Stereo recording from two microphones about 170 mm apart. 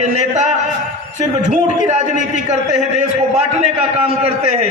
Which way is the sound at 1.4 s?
45° right (ahead or behind).